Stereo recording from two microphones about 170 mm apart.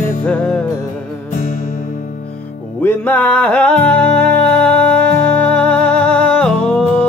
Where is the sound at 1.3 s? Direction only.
45° left (ahead or behind).